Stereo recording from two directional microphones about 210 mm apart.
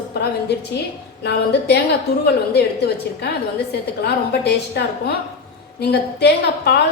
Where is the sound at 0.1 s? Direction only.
50° left (ahead or behind).